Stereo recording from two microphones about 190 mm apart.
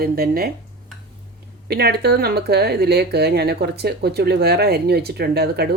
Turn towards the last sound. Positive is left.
turn(degrees=-60)  # may be behind; listen again after turning